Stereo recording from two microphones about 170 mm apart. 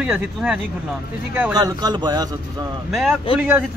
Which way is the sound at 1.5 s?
25° right (ahead or behind).